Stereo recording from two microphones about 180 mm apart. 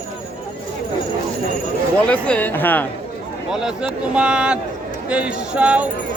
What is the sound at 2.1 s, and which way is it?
Speech, 10° left (ahead or behind).